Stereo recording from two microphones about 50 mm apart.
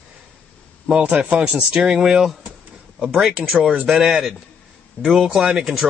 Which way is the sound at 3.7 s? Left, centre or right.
Centre.